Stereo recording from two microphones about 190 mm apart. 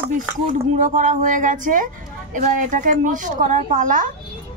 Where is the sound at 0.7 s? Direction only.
40° right (ahead or behind).